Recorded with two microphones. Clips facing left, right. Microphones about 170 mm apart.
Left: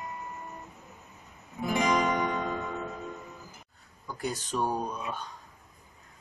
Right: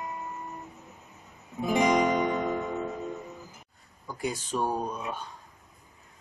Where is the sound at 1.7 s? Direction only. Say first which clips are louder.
Right 3 dB; 20° right (ahead or behind).